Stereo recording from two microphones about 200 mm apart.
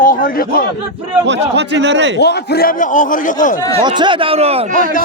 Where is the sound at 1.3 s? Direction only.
60° right (ahead or behind).